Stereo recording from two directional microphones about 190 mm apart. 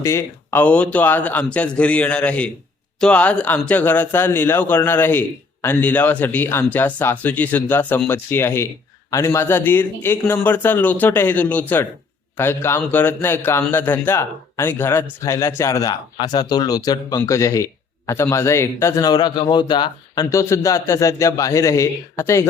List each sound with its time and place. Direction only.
0.0 s speech: 15° left (ahead or behind)